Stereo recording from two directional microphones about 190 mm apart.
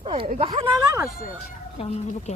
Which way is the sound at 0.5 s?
15° right (ahead or behind).